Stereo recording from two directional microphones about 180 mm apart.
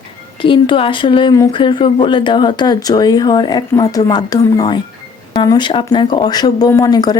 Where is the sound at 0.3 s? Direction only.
30° left (ahead or behind).